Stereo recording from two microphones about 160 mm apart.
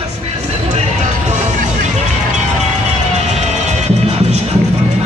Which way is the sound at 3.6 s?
45° right (ahead or behind).